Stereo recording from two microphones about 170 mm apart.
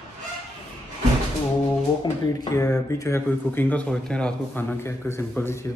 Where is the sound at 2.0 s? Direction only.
20° left (ahead or behind).